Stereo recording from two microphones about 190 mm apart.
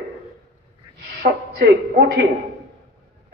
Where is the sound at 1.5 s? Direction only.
60° right (ahead or behind).